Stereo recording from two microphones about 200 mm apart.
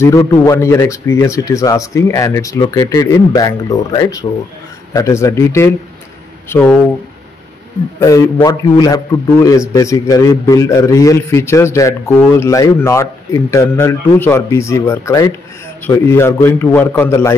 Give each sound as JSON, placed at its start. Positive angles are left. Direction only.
{"t": 0.0, "sound": "a man's voice", "side_deg": 15}
{"t": 8.0, "sound": "a man's voice", "side_deg": 15}